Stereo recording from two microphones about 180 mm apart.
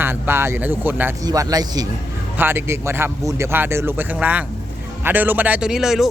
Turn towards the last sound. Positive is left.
turn(degrees=0)  # may be behind; listen again after turning